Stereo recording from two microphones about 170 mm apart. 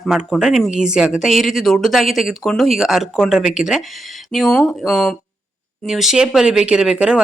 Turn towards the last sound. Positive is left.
turn(degrees=-5)  # may be behind; listen again after turning